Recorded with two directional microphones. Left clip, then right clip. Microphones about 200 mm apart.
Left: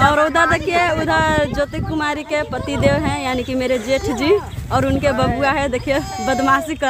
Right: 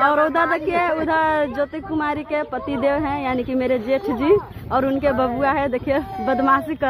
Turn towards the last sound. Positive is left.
turn(degrees=5)  # may be behind; listen again after turning